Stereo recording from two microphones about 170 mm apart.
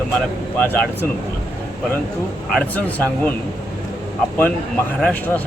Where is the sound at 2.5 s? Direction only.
10° left (ahead or behind).